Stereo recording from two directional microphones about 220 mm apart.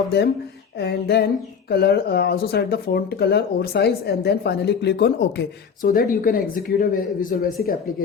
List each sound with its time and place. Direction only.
0.8 s speech: 50° left (ahead or behind)